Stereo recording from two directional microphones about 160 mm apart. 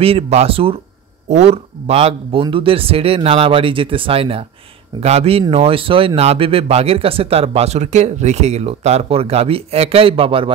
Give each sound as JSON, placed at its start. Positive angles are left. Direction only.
{"t": 0.0, "sound": "speech", "side_deg": -40}